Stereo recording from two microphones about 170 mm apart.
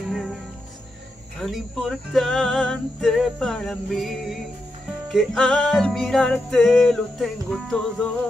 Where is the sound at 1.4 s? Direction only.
Centre (ahead or behind).